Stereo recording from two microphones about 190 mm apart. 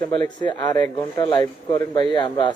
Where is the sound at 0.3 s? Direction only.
20° left (ahead or behind).